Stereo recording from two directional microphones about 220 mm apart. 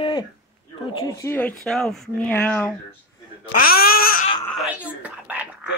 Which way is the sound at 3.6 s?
45° left (ahead or behind).